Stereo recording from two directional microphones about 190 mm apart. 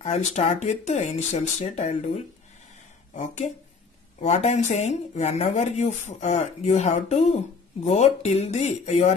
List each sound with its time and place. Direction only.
0.0 s speech: 35° left (ahead or behind)
4.2 s speech: 35° left (ahead or behind)